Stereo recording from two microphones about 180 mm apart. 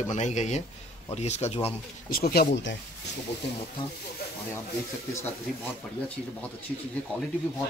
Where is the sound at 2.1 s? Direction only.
55° left (ahead or behind).